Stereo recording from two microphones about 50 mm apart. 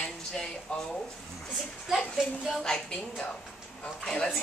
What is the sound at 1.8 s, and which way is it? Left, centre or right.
Speech, centre.